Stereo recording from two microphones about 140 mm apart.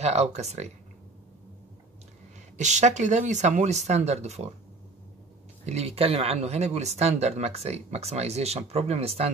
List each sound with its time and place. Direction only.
0.0 s speech: 50° right (ahead or behind)
2.5 s speech: 55° right (ahead or behind)
5.7 s speech: 50° right (ahead or behind)